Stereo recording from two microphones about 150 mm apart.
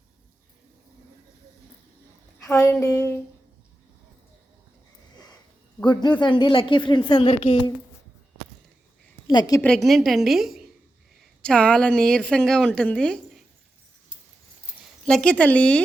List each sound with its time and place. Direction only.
2.8 s a woman's voice: 20° left (ahead or behind)
5.8 s speech: 30° left (ahead or behind)
9.2 s a woman's voice: 25° left (ahead or behind)
9.6 s a woman's voice: 5° left (ahead or behind)
15.0 s a woman's voice: 5° left (ahead or behind)